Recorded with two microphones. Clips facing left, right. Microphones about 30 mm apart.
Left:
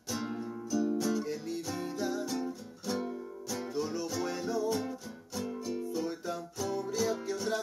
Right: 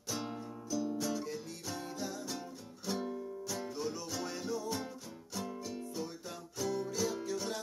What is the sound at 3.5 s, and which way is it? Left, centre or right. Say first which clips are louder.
Music: left 6 dB; left.